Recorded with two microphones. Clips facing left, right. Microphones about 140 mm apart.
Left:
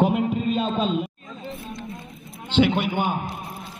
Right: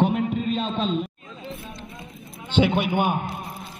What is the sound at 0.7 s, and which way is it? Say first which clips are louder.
Speech: left 1 dB; 5° left (ahead or behind).